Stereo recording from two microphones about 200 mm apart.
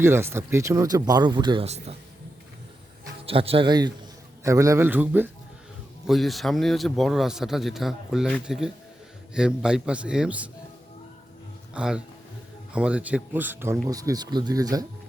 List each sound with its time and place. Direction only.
0.0 s speech: 10° right (ahead or behind); by 2.0 s 30° right (ahead or behind)
3.2 s a man's voice: 30° right (ahead or behind); by 10.5 s 5° right (ahead or behind)
11.7 s a man's voice: 5° right (ahead or behind)